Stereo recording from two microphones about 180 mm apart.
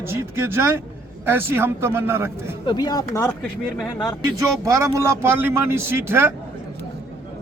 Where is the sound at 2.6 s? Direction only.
25° left (ahead or behind); by 4.0 s 5° left (ahead or behind).